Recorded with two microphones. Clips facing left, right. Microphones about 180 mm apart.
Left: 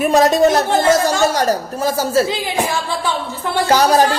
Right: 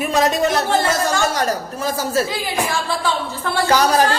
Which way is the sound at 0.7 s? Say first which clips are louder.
Left 4 dB; 20° left (ahead or behind).